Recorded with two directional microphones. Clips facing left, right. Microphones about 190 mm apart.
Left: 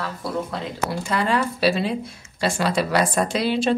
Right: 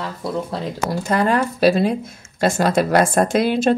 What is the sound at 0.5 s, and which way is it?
Speech, 40° right (ahead or behind).